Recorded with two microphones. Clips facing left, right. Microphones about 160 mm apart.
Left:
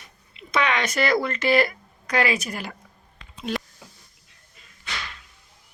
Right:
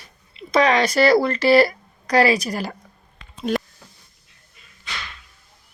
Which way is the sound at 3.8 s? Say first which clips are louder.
Left 1 dB; 10° left (ahead or behind).